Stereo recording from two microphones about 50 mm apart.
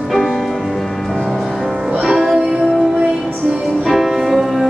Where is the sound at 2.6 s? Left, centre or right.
Centre.